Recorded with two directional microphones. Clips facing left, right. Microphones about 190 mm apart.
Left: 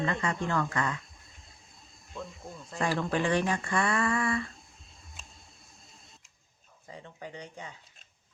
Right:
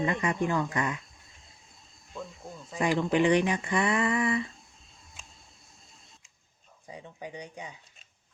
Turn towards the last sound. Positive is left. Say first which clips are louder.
# right 2 dB
turn(degrees=-15)  # may be behind; listen again after turning